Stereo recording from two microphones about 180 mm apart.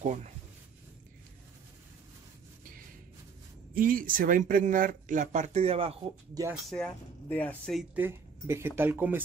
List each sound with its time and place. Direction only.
0.0 s speech: 40° right (ahead or behind)
3.7 s speech: 50° right (ahead or behind); by 5.9 s 35° right (ahead or behind)
6.7 s speech: 5° left (ahead or behind)
7.9 s speech: 10° right (ahead or behind)